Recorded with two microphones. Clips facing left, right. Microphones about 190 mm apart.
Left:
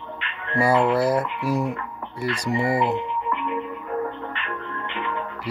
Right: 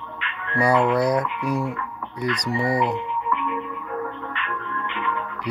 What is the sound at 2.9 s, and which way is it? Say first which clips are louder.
Music: even; 30° left (ahead or behind).